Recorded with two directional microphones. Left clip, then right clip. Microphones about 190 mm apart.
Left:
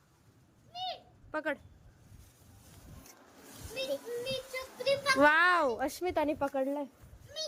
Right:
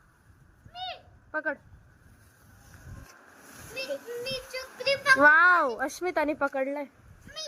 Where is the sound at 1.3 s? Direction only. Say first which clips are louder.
Right 4 dB; 10° left (ahead or behind).